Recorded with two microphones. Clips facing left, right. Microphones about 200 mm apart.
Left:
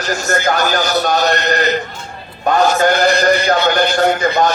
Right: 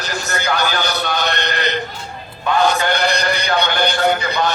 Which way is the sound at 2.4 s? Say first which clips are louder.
Left 4 dB; 45° left (ahead or behind).